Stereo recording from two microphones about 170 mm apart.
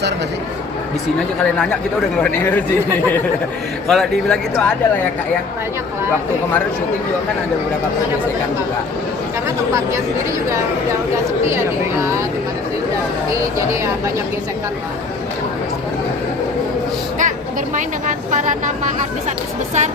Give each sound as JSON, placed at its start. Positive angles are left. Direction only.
{"t": 2.1, "sound": "speech", "side_deg": 10}
{"t": 3.8, "sound": "speech", "side_deg": 0}
{"t": 17.7, "sound": "vehicle", "side_deg": -45}